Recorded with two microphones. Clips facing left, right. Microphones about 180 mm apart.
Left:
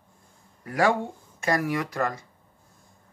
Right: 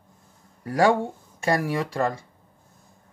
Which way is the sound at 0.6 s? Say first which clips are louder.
Right 3 dB; 30° right (ahead or behind).